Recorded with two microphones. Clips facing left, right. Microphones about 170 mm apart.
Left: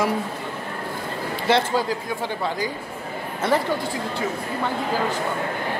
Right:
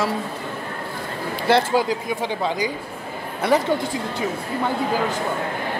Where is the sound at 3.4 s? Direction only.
10° right (ahead or behind).